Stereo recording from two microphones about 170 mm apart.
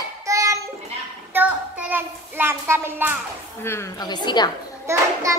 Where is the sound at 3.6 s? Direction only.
15° left (ahead or behind).